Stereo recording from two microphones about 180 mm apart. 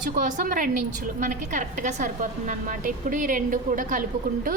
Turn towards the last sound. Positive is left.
turn(degrees=-50)  # may be behind; listen again after turning